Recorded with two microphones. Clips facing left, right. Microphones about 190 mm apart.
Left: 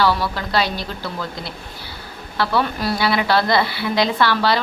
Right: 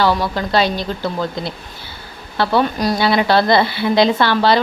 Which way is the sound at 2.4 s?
25° right (ahead or behind).